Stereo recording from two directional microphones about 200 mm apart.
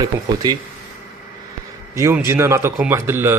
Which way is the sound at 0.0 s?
20° right (ahead or behind).